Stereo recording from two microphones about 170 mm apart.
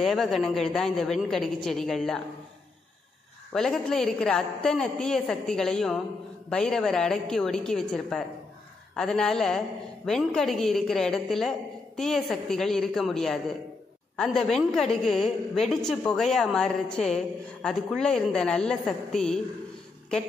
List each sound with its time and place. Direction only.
0.0 s a woman's voice: centre (ahead or behind)
3.5 s a woman's voice: 5° left (ahead or behind)